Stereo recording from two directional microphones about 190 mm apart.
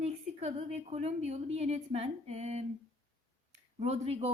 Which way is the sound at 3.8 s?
35° right (ahead or behind).